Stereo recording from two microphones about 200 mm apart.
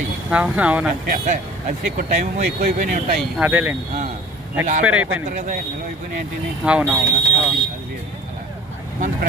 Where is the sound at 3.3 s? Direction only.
10° right (ahead or behind).